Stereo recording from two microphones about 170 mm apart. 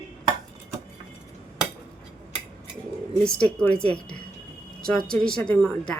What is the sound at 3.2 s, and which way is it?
A woman's voice, 5° left (ahead or behind).